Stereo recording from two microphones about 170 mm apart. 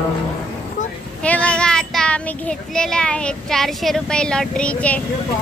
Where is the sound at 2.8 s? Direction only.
5° left (ahead or behind).